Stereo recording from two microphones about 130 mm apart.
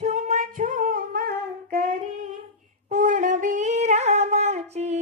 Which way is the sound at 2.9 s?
75° right (ahead or behind).